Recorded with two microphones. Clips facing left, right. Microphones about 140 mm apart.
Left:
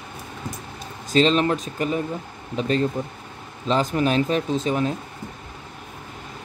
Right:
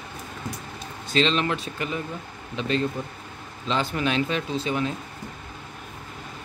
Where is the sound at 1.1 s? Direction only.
40° left (ahead or behind).